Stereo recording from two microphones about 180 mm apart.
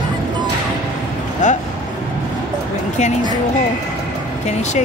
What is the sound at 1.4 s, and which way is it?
Speech, 45° left (ahead or behind).